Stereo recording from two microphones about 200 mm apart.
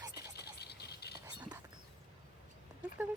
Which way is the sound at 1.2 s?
20° right (ahead or behind).